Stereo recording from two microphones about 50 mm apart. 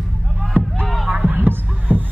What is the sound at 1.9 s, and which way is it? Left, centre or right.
Music, left.